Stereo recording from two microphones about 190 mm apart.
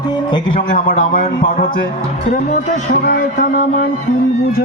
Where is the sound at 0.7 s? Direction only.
45° left (ahead or behind).